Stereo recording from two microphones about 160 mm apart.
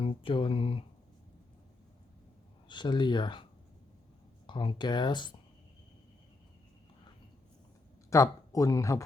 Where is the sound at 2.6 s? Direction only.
30° left (ahead or behind).